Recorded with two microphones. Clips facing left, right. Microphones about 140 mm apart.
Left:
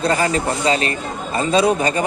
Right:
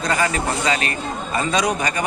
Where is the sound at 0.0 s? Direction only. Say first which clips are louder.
Left 3 dB; 30° left (ahead or behind).